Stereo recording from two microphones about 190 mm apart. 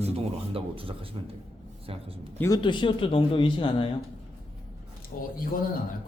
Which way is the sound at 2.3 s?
20° left (ahead or behind).